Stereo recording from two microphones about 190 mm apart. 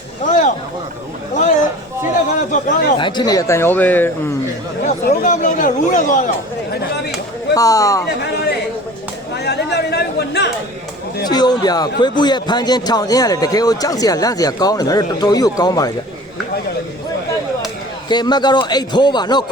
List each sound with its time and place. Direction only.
0.3 s a sound: 40° left (ahead or behind)
3.0 s speech: 25° left (ahead or behind)
5.0 s speech: 55° left (ahead or behind)
5.3 s speech: 45° left (ahead or behind)
7.5 s speech: 20° left (ahead or behind)
9.3 s chatter: 60° left (ahead or behind)
11.3 s speech: 20° left (ahead or behind)
18.1 s speech: 20° left (ahead or behind)